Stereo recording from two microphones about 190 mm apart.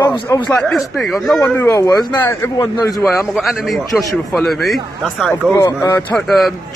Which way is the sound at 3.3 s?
Centre (ahead or behind).